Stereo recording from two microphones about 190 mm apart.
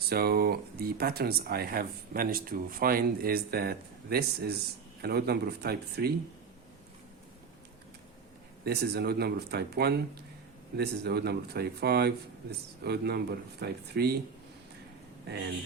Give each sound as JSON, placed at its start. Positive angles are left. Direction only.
{"t": 0.1, "sound": "speech", "side_deg": -55}
{"t": 8.6, "sound": "speech", "side_deg": -55}